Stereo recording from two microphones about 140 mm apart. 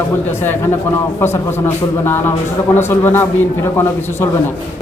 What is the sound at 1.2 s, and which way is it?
Speech, 15° left (ahead or behind).